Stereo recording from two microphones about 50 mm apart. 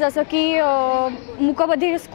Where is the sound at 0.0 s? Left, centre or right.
Left.